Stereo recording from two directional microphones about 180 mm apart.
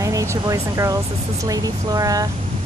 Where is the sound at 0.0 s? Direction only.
15° right (ahead or behind).